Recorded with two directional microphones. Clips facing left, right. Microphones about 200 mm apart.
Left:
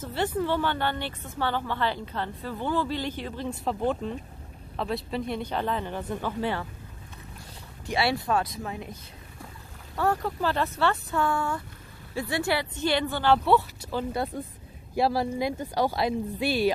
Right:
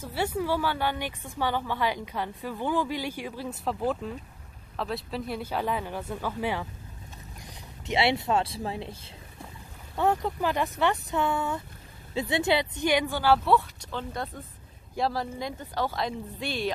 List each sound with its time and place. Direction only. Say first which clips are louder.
0.0 s a woman's voice: left 1 dB; 10° right (ahead or behind)
7.8 s a woman's voice: right 1 dB; 20° right (ahead or behind); by 16.7 s 5° left (ahead or behind)